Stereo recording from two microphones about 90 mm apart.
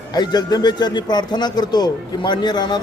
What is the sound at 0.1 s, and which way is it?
Speech, 50° left (ahead or behind).